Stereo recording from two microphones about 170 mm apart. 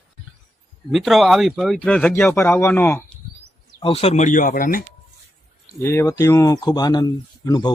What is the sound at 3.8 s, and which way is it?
Speech, 35° left (ahead or behind).